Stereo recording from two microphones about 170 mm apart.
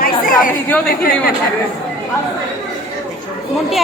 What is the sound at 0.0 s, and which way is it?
Chatter, 55° left (ahead or behind).